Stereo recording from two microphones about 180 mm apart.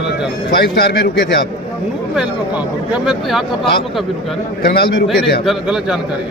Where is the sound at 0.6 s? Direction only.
60° left (ahead or behind).